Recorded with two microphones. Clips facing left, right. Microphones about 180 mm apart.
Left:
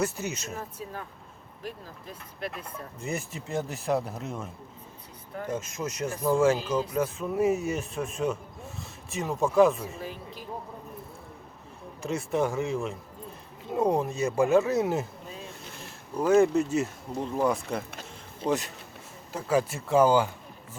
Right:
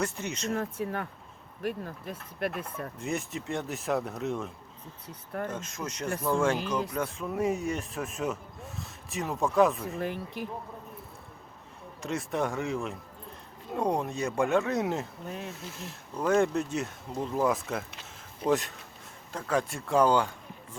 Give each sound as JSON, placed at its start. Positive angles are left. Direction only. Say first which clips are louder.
{"t": 0.0, "sound": "speech", "louder": "left 2 dB", "side_deg": 5}
{"t": 0.5, "sound": "speech", "louder": "right 6 dB", "side_deg": -65}
{"t": 2.6, "sound": "speech", "louder": "right 1 dB", "side_deg": 0}
{"t": 10.0, "sound": "speech", "louder": "right 5 dB", "side_deg": -60}
{"t": 12.0, "sound": "speech", "louder": "left 3 dB", "side_deg": 0}
{"t": 15.3, "sound": "a sound", "louder": "right 4 dB", "side_deg": -70}
{"t": 16.1, "sound": "speech", "louder": "left 4 dB", "side_deg": 5}